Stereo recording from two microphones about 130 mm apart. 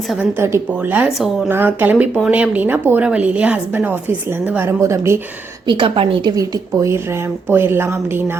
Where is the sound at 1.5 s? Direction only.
15° right (ahead or behind).